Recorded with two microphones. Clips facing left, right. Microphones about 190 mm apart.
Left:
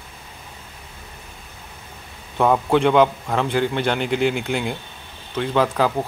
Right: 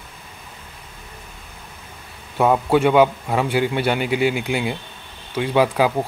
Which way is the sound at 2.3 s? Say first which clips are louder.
Right 1 dB; 5° right (ahead or behind).